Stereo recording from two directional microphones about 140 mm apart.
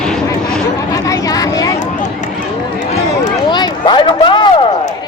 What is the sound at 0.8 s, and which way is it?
Chatter, 25° left (ahead or behind).